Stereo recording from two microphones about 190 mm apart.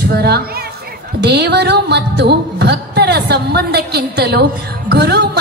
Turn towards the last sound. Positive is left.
turn(degrees=-60)  # may be behind; listen again after turning